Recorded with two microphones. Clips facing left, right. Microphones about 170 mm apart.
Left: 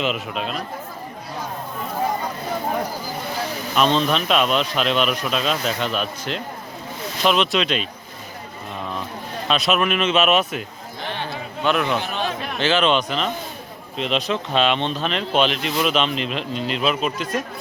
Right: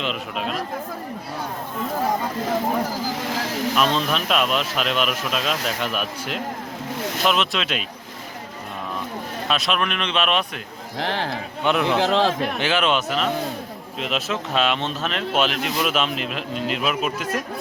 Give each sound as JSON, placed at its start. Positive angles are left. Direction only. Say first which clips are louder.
{"t": 0.0, "sound": "speech", "louder": "left 2 dB", "side_deg": 0}
{"t": 2.9, "sound": "vehicle", "louder": "right 2 dB", "side_deg": -90}
{"t": 3.8, "sound": "speech", "louder": "left 5 dB", "side_deg": -5}
{"t": 9.5, "sound": "speech", "louder": "left 4 dB", "side_deg": 0}
{"t": 11.0, "sound": "a man's voice", "louder": "right 3 dB", "side_deg": -90}
{"t": 12.5, "sound": "speech", "louder": "left 2 dB", "side_deg": -10}